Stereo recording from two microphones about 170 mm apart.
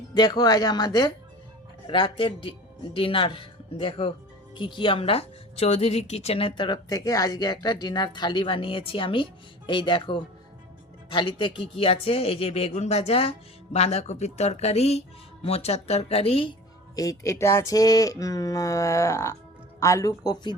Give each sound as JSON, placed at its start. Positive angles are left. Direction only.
{"t": 0.1, "sound": "a woman's voice", "side_deg": 25}
{"t": 16.9, "sound": "a woman's voice", "side_deg": 20}